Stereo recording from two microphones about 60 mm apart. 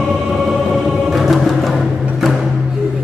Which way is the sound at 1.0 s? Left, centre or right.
Centre.